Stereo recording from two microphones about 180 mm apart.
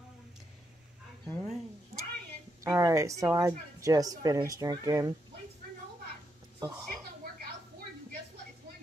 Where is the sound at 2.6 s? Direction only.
15° right (ahead or behind).